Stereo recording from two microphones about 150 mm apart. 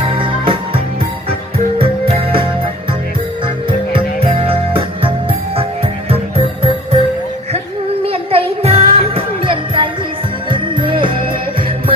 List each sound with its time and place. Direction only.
0.0 s music: 35° right (ahead or behind)
4.2 s music: 40° right (ahead or behind)
8.1 s music: 40° right (ahead or behind)